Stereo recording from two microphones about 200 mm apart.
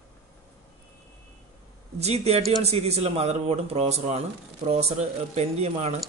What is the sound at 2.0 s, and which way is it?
Speech, 30° right (ahead or behind).